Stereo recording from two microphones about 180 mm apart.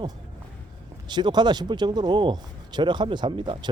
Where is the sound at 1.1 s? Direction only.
25° right (ahead or behind).